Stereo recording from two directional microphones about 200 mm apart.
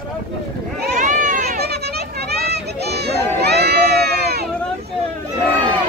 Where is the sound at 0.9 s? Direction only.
40° right (ahead or behind).